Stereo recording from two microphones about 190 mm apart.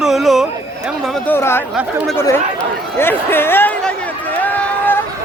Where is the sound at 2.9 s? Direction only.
10° left (ahead or behind).